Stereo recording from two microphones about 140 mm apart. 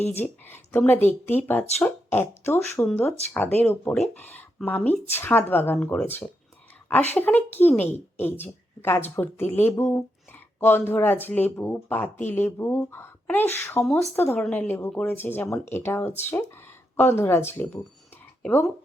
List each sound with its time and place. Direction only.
0.2 s speech: 15° left (ahead or behind)
13.8 s speech: centre (ahead or behind)
14.2 s speech: 15° left (ahead or behind)